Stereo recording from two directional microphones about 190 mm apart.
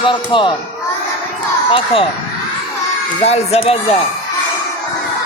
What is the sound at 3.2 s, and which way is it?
Speech, 35° left (ahead or behind).